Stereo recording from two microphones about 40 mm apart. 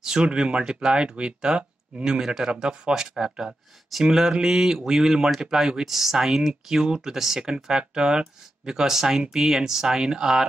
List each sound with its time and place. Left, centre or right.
0.0 s speech: centre